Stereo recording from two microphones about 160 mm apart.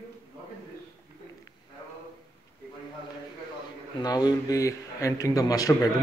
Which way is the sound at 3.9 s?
25° left (ahead or behind).